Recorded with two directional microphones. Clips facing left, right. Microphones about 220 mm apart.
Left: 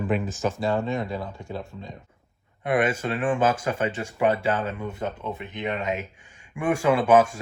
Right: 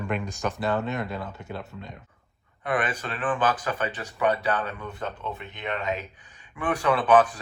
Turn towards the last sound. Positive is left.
turn(degrees=25)  # may be behind; listen again after turning